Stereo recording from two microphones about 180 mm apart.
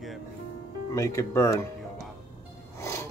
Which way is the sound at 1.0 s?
15° left (ahead or behind).